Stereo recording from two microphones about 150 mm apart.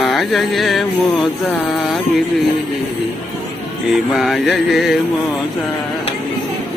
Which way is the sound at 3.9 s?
Centre (ahead or behind).